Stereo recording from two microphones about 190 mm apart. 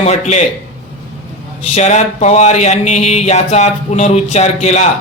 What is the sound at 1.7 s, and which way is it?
Speech, 35° left (ahead or behind).